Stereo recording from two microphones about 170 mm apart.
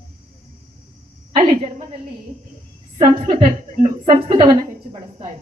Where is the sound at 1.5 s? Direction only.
40° right (ahead or behind).